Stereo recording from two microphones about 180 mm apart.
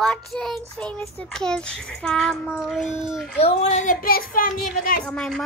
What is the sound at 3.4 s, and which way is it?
A woman's voice, 35° left (ahead or behind).